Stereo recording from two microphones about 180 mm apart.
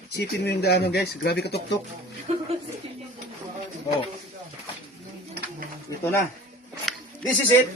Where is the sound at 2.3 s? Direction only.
35° right (ahead or behind).